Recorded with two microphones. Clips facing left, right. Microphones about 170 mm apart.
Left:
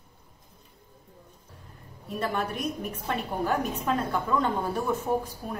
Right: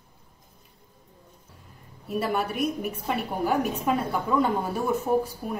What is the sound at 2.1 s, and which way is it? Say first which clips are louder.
A woman's voice: right 3 dB; 10° right (ahead or behind).